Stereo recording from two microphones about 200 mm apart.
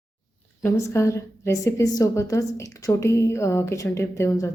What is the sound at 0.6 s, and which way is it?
A woman's voice, 15° left (ahead or behind).